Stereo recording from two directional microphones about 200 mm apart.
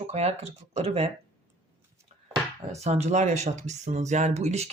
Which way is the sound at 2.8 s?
35° right (ahead or behind).